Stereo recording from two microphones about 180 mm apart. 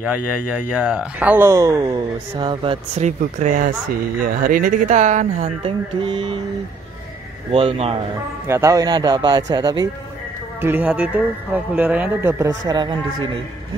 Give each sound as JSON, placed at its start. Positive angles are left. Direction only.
{"t": 0.5, "sound": "speech", "side_deg": -10}
{"t": 1.8, "sound": "speech", "side_deg": -25}
{"t": 7.5, "sound": "speech", "side_deg": -35}
{"t": 8.5, "sound": "a man's voice", "side_deg": -15}
{"t": 10.6, "sound": "speech", "side_deg": -10}